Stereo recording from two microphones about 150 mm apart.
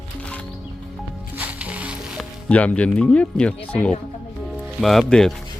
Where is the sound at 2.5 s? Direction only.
10° left (ahead or behind).